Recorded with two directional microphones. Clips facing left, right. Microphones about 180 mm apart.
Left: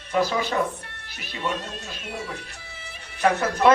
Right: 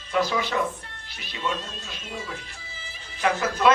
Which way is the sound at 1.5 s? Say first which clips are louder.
Left 2 dB; 65° left (ahead or behind).